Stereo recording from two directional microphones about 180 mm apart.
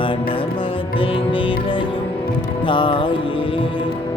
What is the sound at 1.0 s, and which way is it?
Music, 30° left (ahead or behind).